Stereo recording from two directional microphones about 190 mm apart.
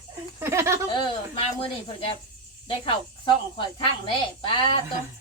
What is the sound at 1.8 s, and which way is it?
Speech, 25° left (ahead or behind).